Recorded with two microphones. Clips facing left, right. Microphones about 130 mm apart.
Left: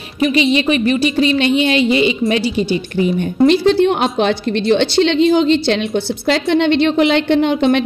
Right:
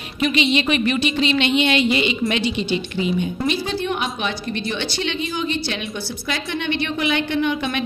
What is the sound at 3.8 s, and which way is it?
A woman's voice, 80° left.